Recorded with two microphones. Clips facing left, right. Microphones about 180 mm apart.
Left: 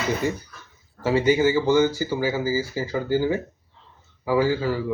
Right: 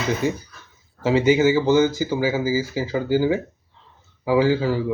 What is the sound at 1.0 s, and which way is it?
Speech, 10° right (ahead or behind).